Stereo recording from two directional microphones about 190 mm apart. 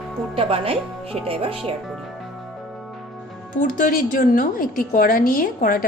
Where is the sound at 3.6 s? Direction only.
50° left (ahead or behind).